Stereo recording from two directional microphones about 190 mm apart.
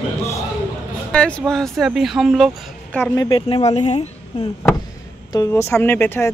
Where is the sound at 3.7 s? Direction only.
35° left (ahead or behind).